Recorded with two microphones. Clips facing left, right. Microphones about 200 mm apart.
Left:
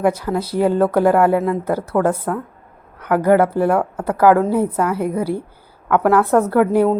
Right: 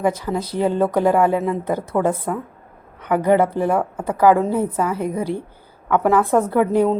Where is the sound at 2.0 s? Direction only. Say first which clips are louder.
Left 2 dB; 10° right (ahead or behind).